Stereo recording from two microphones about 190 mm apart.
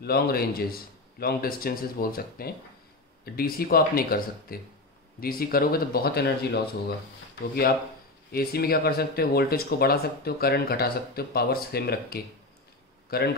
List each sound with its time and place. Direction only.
0.0 s speech: 55° left (ahead or behind)
8.3 s speech: 55° left (ahead or behind)